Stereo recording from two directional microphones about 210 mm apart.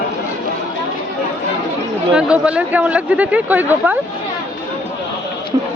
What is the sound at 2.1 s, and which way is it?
Speech, 5° right (ahead or behind).